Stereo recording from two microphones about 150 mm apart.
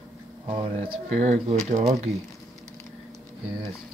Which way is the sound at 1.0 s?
50° right (ahead or behind).